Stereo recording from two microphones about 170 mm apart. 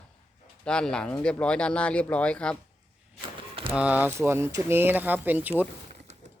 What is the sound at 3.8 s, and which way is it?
Speech, 10° right (ahead or behind).